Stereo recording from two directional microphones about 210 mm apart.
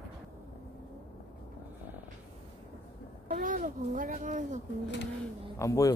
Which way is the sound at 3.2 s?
40° right (ahead or behind).